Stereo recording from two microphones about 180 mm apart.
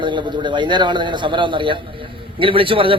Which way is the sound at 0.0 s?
25° right (ahead or behind).